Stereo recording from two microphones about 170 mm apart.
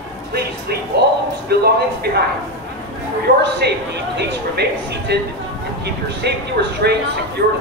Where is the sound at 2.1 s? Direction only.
75° right (ahead or behind).